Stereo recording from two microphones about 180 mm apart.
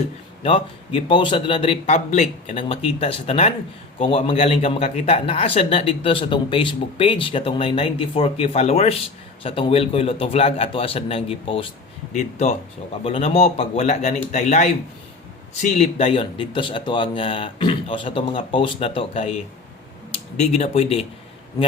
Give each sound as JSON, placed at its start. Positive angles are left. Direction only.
{"t": 0.4, "sound": "a man's voice", "side_deg": 30}
{"t": 15.8, "sound": "speech", "side_deg": 35}